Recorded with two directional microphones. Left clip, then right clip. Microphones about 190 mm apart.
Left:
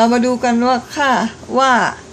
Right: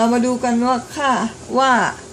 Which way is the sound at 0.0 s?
10° left (ahead or behind).